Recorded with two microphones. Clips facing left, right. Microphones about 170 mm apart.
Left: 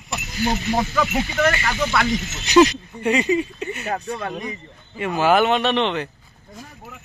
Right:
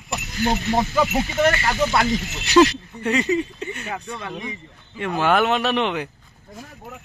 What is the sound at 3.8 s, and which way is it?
Speech, 40° left (ahead or behind).